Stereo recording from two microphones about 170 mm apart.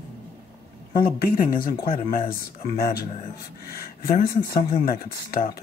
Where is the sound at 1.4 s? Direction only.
55° left (ahead or behind).